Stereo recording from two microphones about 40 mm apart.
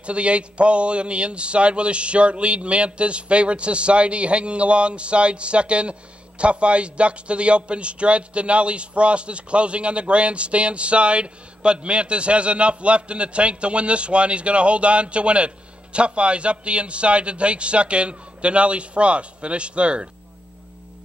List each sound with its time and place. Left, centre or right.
0.0 s a man's voice: right